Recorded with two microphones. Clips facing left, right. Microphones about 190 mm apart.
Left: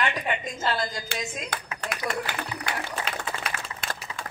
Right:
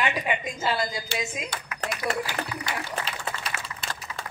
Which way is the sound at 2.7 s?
55° left (ahead or behind).